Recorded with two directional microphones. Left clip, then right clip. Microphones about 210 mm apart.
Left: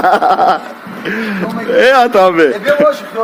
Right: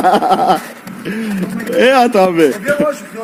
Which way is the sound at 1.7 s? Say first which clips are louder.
Left 2 dB; 20° left (ahead or behind).